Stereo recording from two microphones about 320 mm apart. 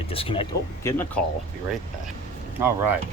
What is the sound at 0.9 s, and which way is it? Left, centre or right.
Speech, centre.